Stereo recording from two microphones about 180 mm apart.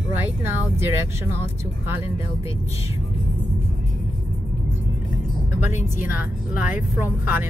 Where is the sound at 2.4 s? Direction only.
35° left (ahead or behind).